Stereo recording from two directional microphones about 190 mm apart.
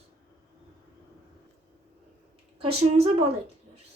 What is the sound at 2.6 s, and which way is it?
Speech, 30° right (ahead or behind).